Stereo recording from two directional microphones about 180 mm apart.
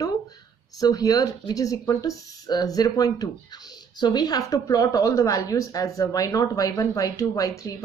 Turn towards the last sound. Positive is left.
turn(degrees=20)  # may be behind; listen again after turning